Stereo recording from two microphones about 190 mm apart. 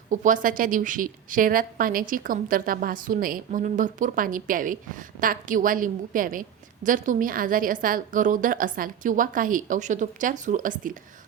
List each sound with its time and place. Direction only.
0.1 s a woman's voice: 45° right (ahead or behind)